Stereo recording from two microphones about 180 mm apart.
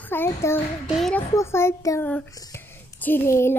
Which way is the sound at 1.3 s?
15° left (ahead or behind).